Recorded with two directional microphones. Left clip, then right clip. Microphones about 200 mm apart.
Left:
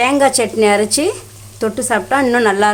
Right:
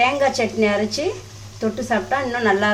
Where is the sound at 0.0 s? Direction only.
45° left (ahead or behind).